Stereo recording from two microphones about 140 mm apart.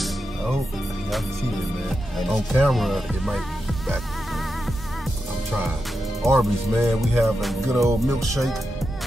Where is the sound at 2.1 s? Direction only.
Centre (ahead or behind).